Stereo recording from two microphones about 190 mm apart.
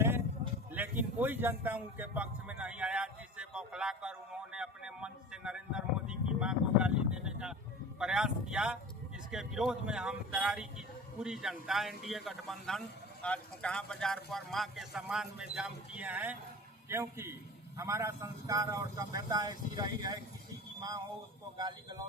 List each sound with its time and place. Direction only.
0.7 s a man's voice: 10° right (ahead or behind)
21.6 s speech: 25° right (ahead or behind)